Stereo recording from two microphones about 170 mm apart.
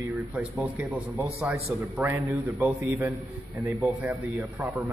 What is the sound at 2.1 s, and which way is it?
Speech, 20° right (ahead or behind).